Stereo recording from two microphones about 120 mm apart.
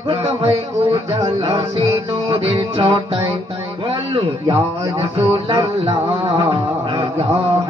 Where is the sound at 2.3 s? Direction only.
55° right (ahead or behind).